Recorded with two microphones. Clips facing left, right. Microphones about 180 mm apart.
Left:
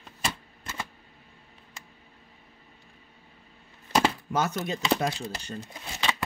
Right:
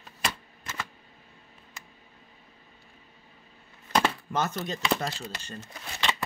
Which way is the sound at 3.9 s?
10° left (ahead or behind).